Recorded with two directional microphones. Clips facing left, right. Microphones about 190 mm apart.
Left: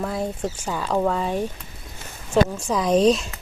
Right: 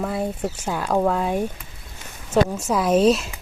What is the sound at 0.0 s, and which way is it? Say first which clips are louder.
Speech: right 1 dB; 5° right (ahead or behind).